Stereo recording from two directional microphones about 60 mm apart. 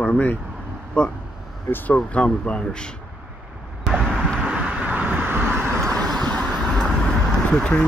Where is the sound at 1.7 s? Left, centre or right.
Left.